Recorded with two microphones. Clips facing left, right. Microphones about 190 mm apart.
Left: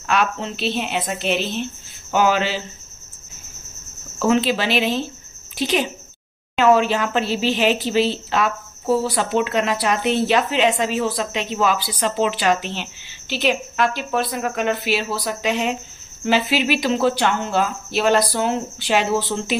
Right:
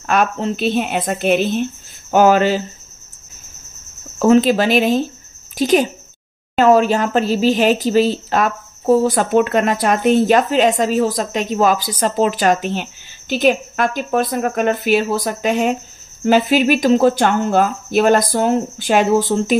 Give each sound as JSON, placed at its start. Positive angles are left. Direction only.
{"t": 0.0, "sound": "speech", "side_deg": -45}
{"t": 4.2, "sound": "speech", "side_deg": -45}